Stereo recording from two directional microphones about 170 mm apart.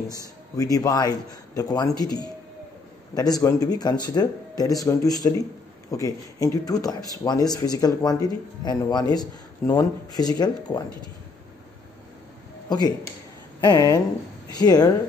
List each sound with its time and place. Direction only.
0.1 s speech: 20° left (ahead or behind)
12.6 s speech: 25° left (ahead or behind)